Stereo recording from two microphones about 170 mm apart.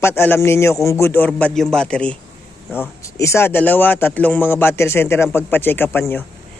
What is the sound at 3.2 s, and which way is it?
A man's voice, 15° left (ahead or behind).